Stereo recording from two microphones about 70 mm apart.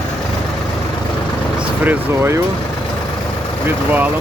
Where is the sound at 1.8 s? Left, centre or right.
Right.